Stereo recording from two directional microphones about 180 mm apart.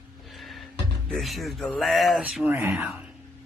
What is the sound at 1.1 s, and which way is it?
Speech, centre (ahead or behind).